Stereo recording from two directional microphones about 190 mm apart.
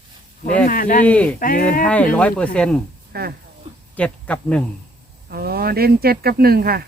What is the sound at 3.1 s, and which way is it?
Speech, 55° right (ahead or behind).